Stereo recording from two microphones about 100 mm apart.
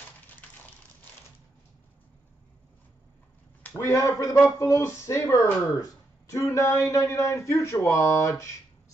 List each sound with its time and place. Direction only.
3.7 s speech: 35° left (ahead or behind)